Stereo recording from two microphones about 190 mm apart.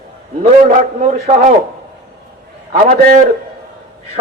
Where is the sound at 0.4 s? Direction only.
45° right (ahead or behind).